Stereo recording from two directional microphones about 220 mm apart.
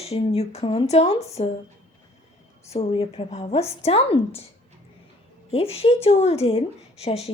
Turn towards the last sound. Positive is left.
turn(degrees=30)  # may be behind; listen again after turning